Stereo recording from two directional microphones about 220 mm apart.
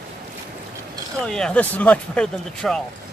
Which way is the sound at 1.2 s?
5° left (ahead or behind).